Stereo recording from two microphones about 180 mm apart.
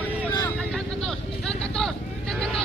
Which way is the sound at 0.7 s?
5° left (ahead or behind).